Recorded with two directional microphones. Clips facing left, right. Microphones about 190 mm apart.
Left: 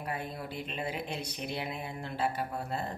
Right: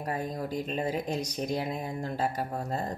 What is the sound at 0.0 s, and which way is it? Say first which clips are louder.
Speech: right 5 dB; 40° right (ahead or behind).